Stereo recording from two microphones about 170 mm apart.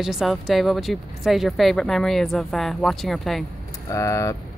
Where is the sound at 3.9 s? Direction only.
20° left (ahead or behind).